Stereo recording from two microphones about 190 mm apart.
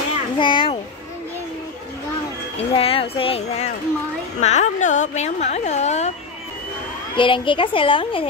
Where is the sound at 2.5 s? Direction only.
30° left (ahead or behind).